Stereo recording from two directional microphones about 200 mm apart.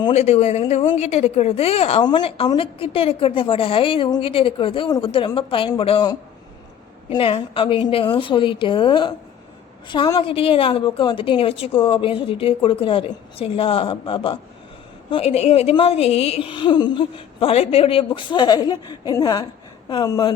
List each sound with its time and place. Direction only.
0.0 s a woman's voice: 35° left (ahead or behind)